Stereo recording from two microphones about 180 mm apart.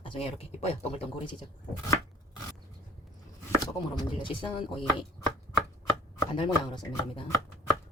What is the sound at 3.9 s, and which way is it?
Speech, 25° left (ahead or behind).